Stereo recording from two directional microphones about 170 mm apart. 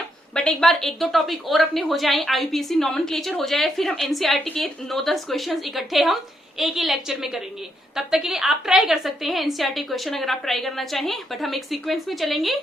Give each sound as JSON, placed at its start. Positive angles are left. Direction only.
{"t": 0.3, "sound": "a woman's voice", "side_deg": 5}